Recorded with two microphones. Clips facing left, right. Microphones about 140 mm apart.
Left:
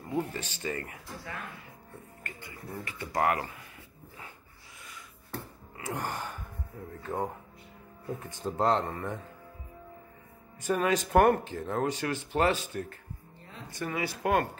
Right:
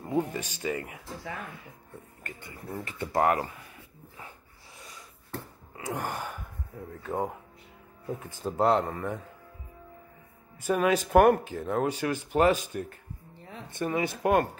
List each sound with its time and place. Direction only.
0.1 s speech: 15° right (ahead or behind)
2.2 s speech: 20° right (ahead or behind)
5.8 s gasp: 15° right (ahead or behind)
7.0 s speech: 5° right (ahead or behind)
8.5 s speech: 10° right (ahead or behind)
10.7 s speech: 10° right (ahead or behind)
13.7 s speech: 25° right (ahead or behind)